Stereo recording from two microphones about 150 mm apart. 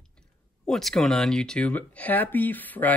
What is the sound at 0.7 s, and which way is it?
Speech, centre (ahead or behind).